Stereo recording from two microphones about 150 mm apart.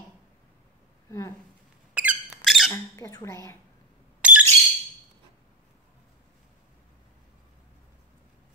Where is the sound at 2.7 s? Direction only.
20° left (ahead or behind).